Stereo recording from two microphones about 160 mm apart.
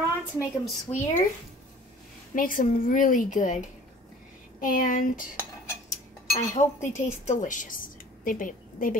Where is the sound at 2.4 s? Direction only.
60° left (ahead or behind).